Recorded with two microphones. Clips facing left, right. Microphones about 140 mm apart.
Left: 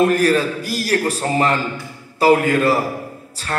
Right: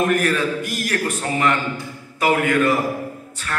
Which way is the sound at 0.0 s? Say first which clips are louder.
Left 4 dB; 35° left (ahead or behind).